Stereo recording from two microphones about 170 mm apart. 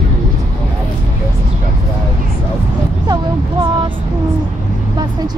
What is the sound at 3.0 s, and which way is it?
Speech, 25° right (ahead or behind).